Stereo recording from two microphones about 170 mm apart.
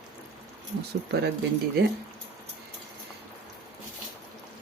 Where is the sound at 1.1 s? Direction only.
70° right (ahead or behind).